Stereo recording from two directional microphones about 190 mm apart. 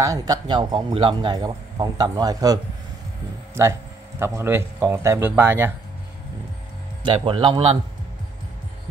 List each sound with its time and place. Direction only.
0.3 s a man's voice: 20° right (ahead or behind)
4.2 s a man's voice: 15° right (ahead or behind)
7.0 s a man's voice: 25° right (ahead or behind)